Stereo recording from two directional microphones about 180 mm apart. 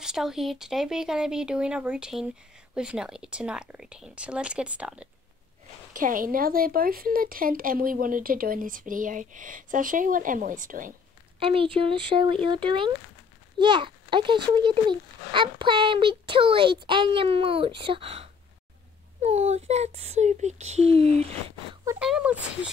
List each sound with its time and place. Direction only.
0.0 s speech: 5° right (ahead or behind)
5.9 s speech: 50° right (ahead or behind)
11.3 s a child's voice: 30° right (ahead or behind)
21.8 s speech: 5° right (ahead or behind)